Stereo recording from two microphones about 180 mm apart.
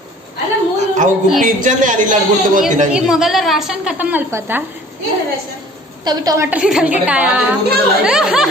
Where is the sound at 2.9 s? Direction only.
5° right (ahead or behind).